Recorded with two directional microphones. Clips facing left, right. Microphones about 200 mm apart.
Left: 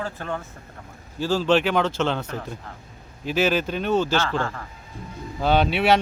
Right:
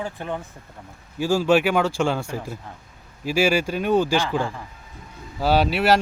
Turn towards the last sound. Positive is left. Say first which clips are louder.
# right 1 dB
turn(degrees=-5)  # may be behind; listen again after turning